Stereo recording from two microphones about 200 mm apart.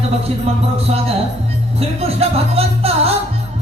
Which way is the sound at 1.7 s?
30° right (ahead or behind).